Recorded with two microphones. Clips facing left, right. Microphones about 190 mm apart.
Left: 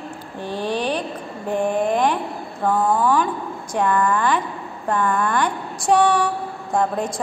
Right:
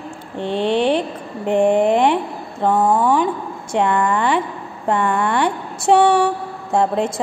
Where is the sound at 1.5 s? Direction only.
25° right (ahead or behind).